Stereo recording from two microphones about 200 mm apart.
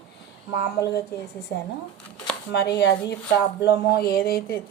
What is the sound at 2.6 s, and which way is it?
Speech, 60° left (ahead or behind).